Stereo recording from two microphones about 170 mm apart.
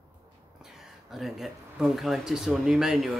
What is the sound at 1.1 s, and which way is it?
Speech, centre (ahead or behind).